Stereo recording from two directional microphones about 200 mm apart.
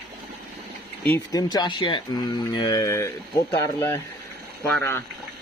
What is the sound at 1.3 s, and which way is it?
Speech, 20° left (ahead or behind).